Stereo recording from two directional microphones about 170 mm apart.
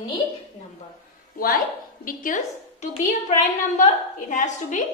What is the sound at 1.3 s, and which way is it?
A woman's voice, 55° left (ahead or behind).